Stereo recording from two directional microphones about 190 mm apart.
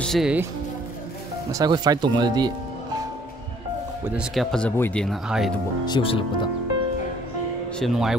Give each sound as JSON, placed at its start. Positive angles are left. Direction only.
{"t": 0.0, "sound": "speech", "side_deg": 0}
{"t": 1.5, "sound": "speech", "side_deg": -20}
{"t": 4.1, "sound": "speech", "side_deg": 0}
{"t": 5.9, "sound": "speech", "side_deg": 25}
{"t": 7.8, "sound": "speech", "side_deg": 0}